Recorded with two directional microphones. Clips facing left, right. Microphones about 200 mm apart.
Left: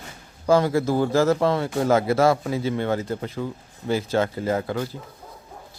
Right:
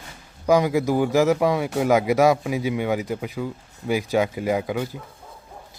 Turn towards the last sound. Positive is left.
turn(degrees=-15)  # may be behind; listen again after turning